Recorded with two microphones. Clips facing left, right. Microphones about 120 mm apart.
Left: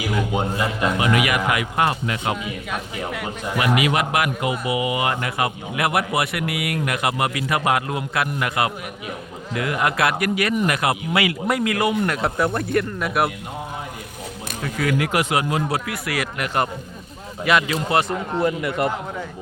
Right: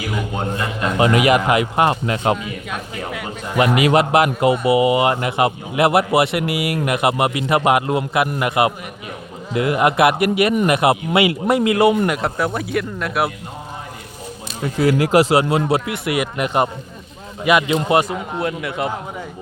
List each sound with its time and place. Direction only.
0.3 s a man's voice: 10° left (ahead or behind)
0.9 s a man's voice: 30° right (ahead or behind)
2.4 s speech: 5° left (ahead or behind)
3.8 s a man's voice: 30° right (ahead or behind)
12.0 s speech: 5° right (ahead or behind)
14.6 s speech: 30° right (ahead or behind)
18.1 s speech: 5° right (ahead or behind)